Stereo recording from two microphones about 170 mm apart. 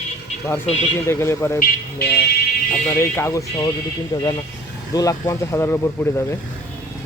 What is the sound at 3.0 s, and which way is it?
Speech, 15° left (ahead or behind).